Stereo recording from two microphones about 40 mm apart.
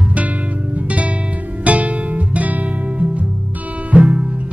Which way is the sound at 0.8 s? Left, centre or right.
Right.